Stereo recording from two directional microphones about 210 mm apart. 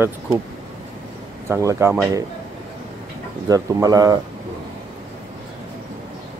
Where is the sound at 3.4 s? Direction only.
15° right (ahead or behind).